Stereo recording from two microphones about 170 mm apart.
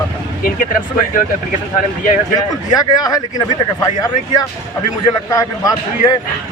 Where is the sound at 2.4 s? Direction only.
20° left (ahead or behind).